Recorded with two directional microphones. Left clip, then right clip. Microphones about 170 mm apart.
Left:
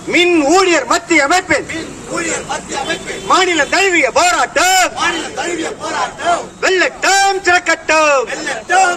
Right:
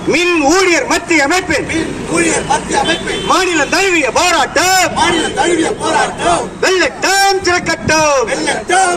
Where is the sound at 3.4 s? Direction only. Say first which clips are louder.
Even; 40° right (ahead or behind).